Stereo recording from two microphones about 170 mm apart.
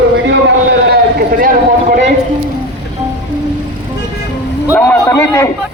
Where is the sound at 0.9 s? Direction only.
60° right (ahead or behind).